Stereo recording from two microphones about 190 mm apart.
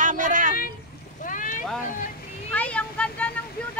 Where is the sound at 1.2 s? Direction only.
45° left (ahead or behind).